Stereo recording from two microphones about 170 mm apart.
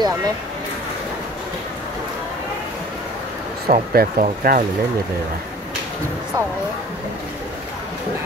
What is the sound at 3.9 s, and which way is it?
Speech, 60° right (ahead or behind).